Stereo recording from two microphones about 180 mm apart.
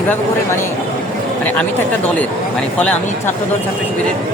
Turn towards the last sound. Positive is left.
turn(degrees=5)  # may be behind; listen again after turning